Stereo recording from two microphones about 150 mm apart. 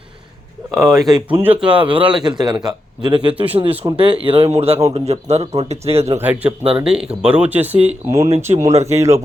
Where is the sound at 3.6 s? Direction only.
40° right (ahead or behind).